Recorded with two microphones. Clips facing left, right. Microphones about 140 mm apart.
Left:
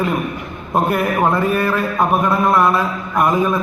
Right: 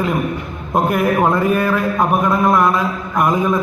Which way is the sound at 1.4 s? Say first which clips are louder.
Right 1 dB; 10° right (ahead or behind).